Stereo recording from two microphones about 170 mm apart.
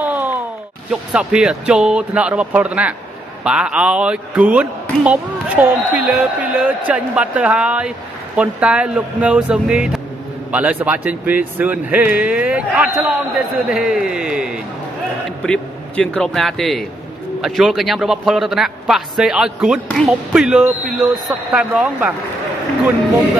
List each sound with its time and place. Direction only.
0.0 s a sound: 10° right (ahead or behind)
0.8 s a man's voice: 5° right (ahead or behind)
15.4 s a man's voice: 5° left (ahead or behind)